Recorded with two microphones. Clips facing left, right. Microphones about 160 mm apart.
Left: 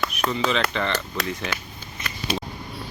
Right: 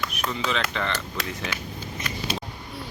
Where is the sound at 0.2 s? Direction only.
60° left (ahead or behind).